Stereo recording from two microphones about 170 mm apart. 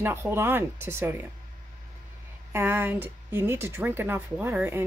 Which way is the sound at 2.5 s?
15° right (ahead or behind).